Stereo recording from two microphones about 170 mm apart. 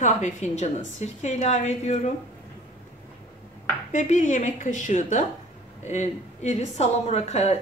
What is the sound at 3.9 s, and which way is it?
A woman's voice, 45° left (ahead or behind).